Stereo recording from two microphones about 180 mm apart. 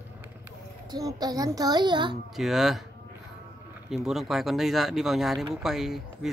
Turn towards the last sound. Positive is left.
turn(degrees=0)  # may be behind; listen again after turning